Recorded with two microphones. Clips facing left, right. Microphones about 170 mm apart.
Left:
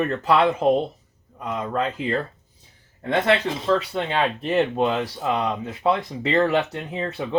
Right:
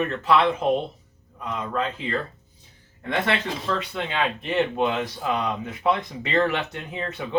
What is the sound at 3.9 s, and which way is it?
Speech, 35° left (ahead or behind).